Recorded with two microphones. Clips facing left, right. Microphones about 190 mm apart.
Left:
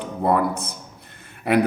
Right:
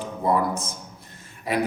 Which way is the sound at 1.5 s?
60° left (ahead or behind).